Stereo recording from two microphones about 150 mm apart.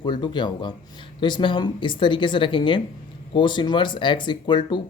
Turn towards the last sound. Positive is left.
turn(degrees=30)  # may be behind; listen again after turning